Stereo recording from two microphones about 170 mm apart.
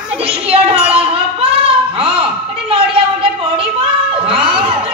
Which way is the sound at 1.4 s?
35° right (ahead or behind).